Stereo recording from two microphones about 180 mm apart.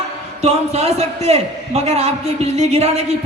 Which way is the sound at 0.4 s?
35° right (ahead or behind).